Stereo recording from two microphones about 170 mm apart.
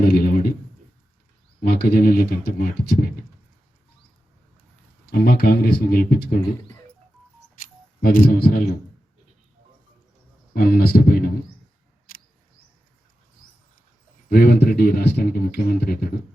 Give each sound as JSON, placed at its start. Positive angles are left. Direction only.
{"t": 0.0, "sound": "a sound", "side_deg": 70}
{"t": 1.6, "sound": "speech", "side_deg": 65}
{"t": 5.1, "sound": "speech", "side_deg": 65}
{"t": 8.0, "sound": "speech", "side_deg": 55}
{"t": 10.5, "sound": "speech", "side_deg": 60}
{"t": 14.3, "sound": "speech", "side_deg": 65}